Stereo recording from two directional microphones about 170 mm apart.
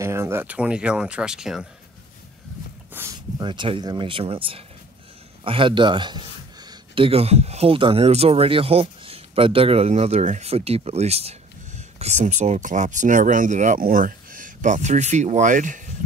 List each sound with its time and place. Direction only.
0.0 s speech: 15° right (ahead or behind)
2.9 s speech: 15° right (ahead or behind); by 15.8 s 50° right (ahead or behind)